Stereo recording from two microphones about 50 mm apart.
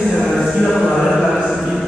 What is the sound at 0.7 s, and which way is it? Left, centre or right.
Mantra, centre.